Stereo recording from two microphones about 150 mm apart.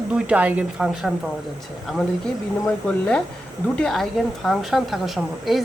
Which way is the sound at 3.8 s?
5° left (ahead or behind).